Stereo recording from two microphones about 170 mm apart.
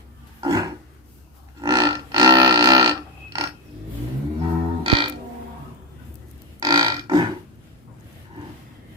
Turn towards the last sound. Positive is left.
turn(degrees=-25)  # may be behind; listen again after turning